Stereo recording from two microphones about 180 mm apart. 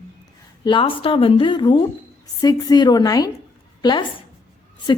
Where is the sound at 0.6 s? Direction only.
25° left (ahead or behind).